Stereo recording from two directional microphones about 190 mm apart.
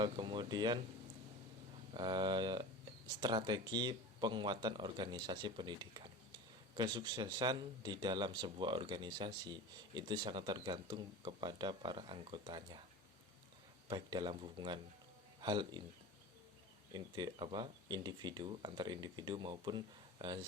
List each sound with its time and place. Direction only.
0.0 s speech: 25° right (ahead or behind)
1.9 s speech: 25° right (ahead or behind)
13.9 s speech: 25° right (ahead or behind)
16.9 s speech: 25° right (ahead or behind)